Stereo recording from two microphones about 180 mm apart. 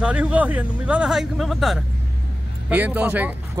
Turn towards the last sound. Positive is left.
turn(degrees=-10)  # may be behind; listen again after turning